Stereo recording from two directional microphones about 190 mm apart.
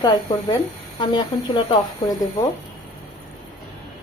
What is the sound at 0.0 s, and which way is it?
Speech, 20° left (ahead or behind).